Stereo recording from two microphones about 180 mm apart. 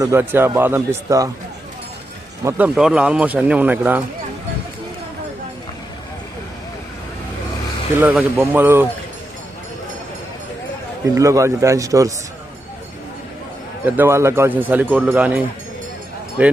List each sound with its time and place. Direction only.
0.0 s speech: 15° right (ahead or behind)
2.4 s speech: 10° right (ahead or behind)
7.9 s speech: 5° right (ahead or behind)
11.1 s speech: 15° right (ahead or behind)
13.8 s speech: 10° right (ahead or behind)